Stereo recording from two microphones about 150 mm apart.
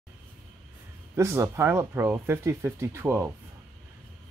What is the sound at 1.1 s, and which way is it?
Speech, 20° right (ahead or behind).